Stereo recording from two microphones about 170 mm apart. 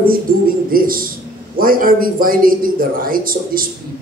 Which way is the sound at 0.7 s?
55° right (ahead or behind).